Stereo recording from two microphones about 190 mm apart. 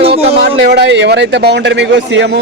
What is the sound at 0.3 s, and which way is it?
Speech, 60° right (ahead or behind).